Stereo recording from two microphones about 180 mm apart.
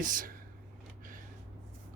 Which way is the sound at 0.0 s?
50° right (ahead or behind).